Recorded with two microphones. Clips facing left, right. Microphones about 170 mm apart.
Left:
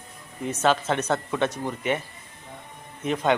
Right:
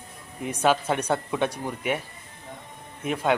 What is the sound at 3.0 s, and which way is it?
Speech, 5° right (ahead or behind).